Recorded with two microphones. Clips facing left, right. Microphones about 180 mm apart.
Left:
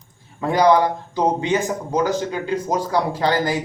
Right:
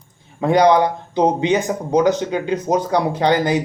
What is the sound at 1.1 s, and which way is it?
Speech, 20° right (ahead or behind).